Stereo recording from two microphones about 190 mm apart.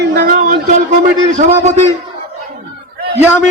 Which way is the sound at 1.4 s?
35° right (ahead or behind).